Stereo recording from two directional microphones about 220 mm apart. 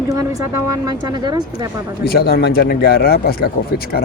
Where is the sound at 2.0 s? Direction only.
45° left (ahead or behind).